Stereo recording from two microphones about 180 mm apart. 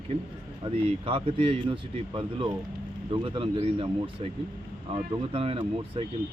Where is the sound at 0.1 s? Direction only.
30° right (ahead or behind).